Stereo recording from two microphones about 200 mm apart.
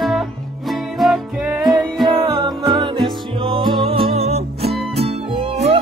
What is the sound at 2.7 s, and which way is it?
Music, 25° right (ahead or behind).